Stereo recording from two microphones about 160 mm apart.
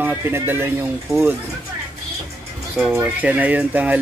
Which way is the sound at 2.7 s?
5° right (ahead or behind).